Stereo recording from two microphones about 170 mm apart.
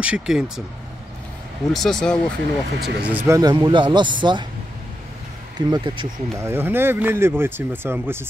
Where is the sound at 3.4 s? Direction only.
25° right (ahead or behind).